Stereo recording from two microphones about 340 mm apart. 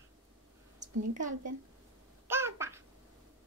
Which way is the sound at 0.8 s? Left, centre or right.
Right.